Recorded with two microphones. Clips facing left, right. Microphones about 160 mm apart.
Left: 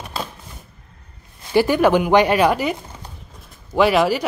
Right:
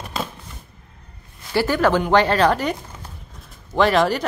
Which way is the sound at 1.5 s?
15° left (ahead or behind).